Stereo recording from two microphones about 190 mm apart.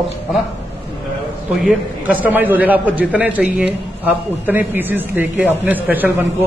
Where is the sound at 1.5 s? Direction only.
Centre (ahead or behind).